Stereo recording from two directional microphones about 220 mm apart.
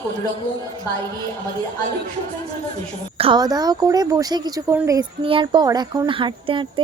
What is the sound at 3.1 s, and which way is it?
Speech, 25° right (ahead or behind).